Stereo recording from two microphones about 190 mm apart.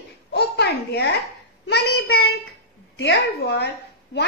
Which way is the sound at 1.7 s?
60° left (ahead or behind).